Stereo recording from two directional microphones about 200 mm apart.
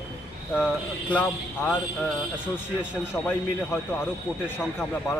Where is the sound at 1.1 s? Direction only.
5° left (ahead or behind).